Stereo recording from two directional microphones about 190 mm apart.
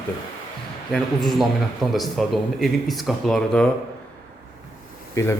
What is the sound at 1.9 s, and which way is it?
Speech, centre (ahead or behind).